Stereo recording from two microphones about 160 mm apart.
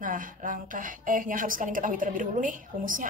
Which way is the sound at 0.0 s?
60° right (ahead or behind).